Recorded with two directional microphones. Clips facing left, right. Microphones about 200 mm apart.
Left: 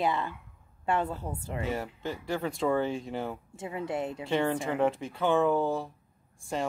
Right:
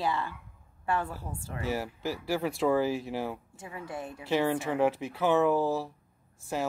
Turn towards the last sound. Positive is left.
turn(degrees=-5)  # may be behind; listen again after turning